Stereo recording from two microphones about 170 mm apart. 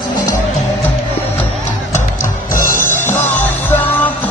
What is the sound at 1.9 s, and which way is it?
Music, 50° left (ahead or behind).